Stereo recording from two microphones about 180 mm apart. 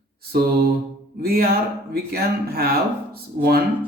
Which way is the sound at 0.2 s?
55° right (ahead or behind).